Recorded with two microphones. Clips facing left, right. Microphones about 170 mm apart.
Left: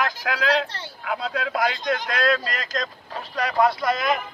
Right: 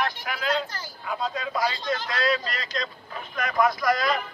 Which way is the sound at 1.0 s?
70° left (ahead or behind).